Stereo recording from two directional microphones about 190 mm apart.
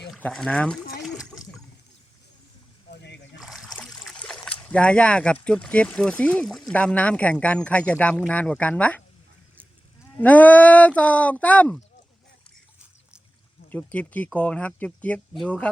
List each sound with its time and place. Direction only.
0.1 s speech: 5° left (ahead or behind)
1.0 s splash: centre (ahead or behind)
2.9 s a sound: 60° left (ahead or behind)
3.3 s speech: centre (ahead or behind)
10.2 s speech: 10° left (ahead or behind)
13.7 s speech: 10° left (ahead or behind)